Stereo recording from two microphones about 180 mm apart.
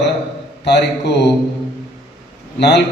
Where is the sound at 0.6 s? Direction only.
70° left (ahead or behind).